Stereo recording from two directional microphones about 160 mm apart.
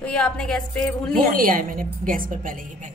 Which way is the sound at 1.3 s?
60° right (ahead or behind).